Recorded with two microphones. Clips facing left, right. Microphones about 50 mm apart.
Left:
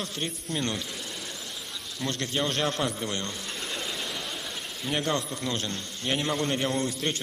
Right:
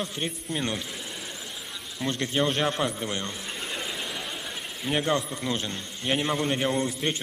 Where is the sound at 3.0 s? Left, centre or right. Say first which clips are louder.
Right 1 dB; centre.